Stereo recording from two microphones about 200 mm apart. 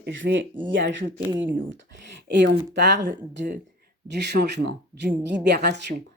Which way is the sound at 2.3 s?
60° right (ahead or behind).